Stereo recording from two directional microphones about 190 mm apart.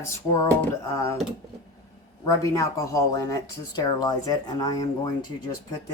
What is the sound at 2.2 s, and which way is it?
Speech, 15° left (ahead or behind).